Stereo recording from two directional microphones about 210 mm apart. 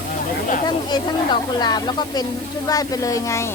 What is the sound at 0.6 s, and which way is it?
Speech, 20° left (ahead or behind).